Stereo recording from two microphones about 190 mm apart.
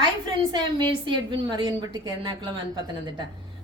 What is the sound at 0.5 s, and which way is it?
A woman's voice, 25° right (ahead or behind).